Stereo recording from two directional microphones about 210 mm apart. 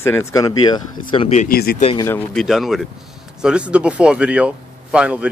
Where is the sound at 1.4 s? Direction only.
45° left (ahead or behind).